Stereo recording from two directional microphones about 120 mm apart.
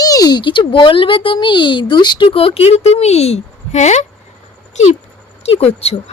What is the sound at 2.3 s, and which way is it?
Speech, 55° left (ahead or behind).